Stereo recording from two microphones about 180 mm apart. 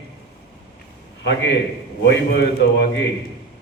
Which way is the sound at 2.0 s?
65° left (ahead or behind).